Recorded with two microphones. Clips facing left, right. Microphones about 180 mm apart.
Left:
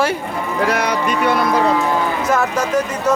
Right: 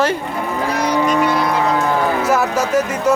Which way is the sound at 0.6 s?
65° left (ahead or behind).